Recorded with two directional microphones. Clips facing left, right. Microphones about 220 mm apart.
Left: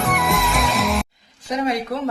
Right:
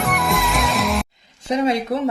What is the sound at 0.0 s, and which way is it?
Music, centre (ahead or behind).